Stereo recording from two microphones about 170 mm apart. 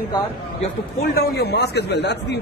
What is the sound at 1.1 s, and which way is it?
A man's voice, 65° left (ahead or behind).